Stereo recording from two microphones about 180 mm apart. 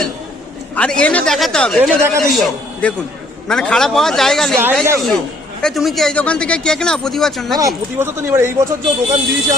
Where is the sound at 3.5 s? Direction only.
5° left (ahead or behind).